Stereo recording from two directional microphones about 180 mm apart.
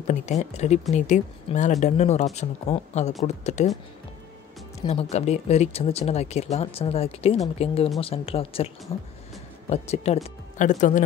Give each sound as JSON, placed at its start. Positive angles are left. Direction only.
{"t": 0.0, "sound": "speech", "side_deg": 40}
{"t": 5.1, "sound": "speech", "side_deg": 35}